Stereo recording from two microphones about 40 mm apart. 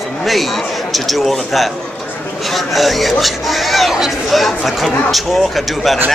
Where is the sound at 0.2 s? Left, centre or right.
Centre.